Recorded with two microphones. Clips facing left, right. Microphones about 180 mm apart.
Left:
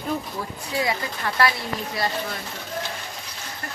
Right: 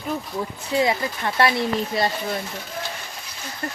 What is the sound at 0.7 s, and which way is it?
Speech, 25° right (ahead or behind).